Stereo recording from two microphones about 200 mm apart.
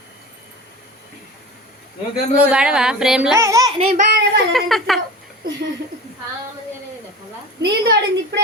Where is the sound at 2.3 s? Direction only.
5° right (ahead or behind).